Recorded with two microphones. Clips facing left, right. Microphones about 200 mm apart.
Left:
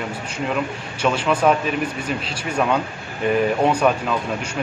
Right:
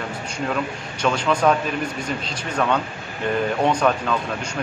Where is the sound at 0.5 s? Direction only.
5° left (ahead or behind).